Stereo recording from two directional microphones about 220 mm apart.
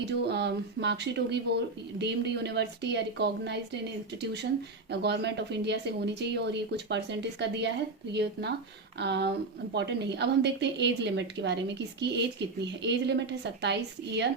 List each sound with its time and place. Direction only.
0.0 s a woman's voice: 50° right (ahead or behind)
4.9 s a woman's voice: 50° right (ahead or behind)